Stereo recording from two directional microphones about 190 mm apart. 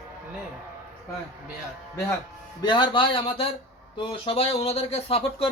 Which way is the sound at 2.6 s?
25° left (ahead or behind).